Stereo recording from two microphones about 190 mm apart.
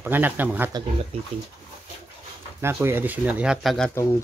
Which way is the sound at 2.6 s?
15° right (ahead or behind).